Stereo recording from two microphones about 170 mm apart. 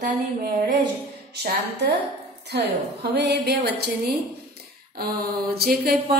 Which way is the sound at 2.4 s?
70° right (ahead or behind).